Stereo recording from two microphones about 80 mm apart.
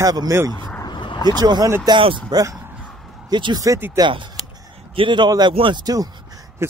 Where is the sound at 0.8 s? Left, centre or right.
Left.